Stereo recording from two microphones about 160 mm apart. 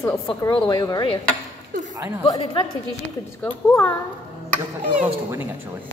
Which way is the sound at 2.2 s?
30° left (ahead or behind).